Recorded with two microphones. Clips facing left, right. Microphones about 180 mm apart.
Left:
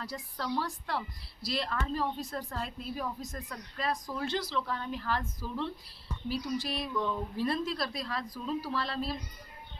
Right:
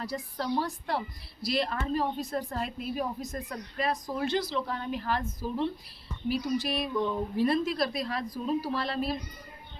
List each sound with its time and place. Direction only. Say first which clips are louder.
0.0 s a woman's voice: right 4 dB; 20° right (ahead or behind)